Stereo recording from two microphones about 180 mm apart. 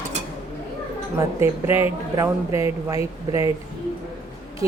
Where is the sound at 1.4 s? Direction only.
15° right (ahead or behind).